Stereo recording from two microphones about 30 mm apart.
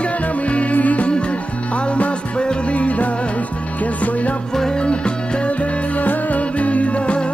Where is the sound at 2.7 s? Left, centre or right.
Left.